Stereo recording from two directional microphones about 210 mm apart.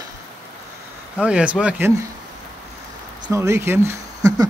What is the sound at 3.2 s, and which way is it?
Speech, 15° right (ahead or behind).